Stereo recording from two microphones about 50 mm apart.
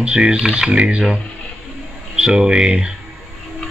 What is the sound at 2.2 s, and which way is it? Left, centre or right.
Speech, centre.